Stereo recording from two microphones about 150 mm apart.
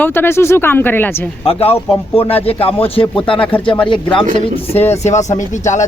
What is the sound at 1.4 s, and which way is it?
A man's voice, 40° left (ahead or behind).